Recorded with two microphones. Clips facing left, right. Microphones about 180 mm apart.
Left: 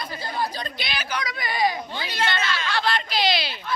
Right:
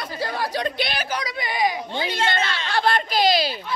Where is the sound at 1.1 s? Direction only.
35° right (ahead or behind).